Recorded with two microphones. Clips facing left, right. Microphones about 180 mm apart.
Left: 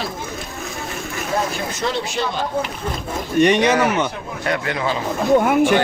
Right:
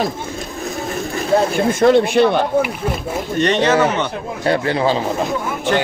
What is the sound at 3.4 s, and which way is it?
Speech, 10° left (ahead or behind).